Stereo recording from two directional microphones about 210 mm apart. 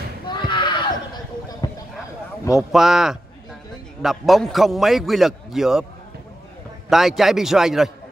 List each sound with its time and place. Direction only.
0.3 s a sound: 20° left (ahead or behind)
2.5 s a man's voice: centre (ahead or behind)
6.9 s a man's voice: centre (ahead or behind)